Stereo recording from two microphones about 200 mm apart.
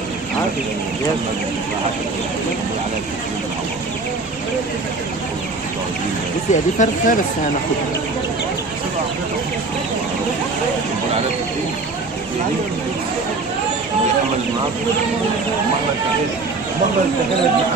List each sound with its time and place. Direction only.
6.5 s speech: 40° left (ahead or behind)